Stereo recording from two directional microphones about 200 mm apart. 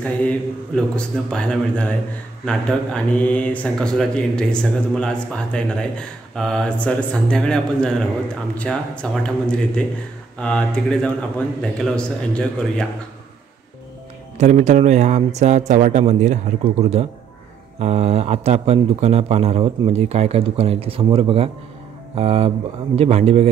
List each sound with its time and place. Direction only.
0.0 s speech: 5° left (ahead or behind)
14.4 s speech: 35° right (ahead or behind)